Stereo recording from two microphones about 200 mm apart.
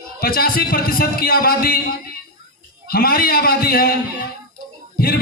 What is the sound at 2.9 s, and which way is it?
A man's voice, 50° left (ahead or behind).